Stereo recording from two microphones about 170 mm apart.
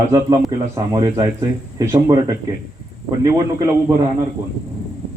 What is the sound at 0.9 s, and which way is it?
A man's voice, 20° right (ahead or behind).